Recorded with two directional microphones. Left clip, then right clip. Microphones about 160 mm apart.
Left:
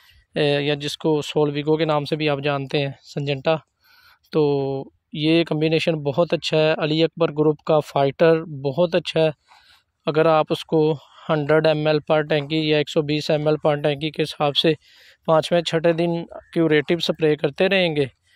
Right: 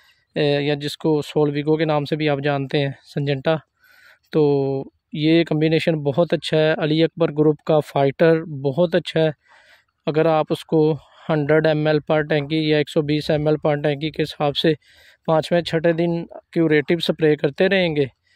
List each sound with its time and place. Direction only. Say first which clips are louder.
0.3 s speech: right 1 dB; 30° right (ahead or behind)